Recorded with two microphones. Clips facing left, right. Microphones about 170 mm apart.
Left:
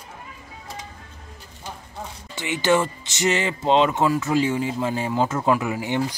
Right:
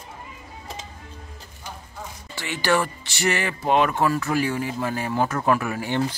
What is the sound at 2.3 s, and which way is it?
Speech, 20° left (ahead or behind).